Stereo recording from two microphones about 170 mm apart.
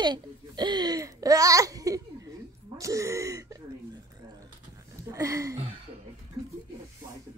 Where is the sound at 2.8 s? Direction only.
20° right (ahead or behind).